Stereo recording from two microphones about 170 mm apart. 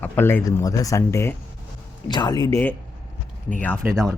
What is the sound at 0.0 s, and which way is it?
Speech, 10° left (ahead or behind).